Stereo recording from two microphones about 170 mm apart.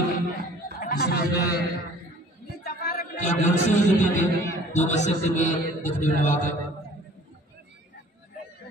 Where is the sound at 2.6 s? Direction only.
60° left (ahead or behind); by 3.5 s 45° left (ahead or behind).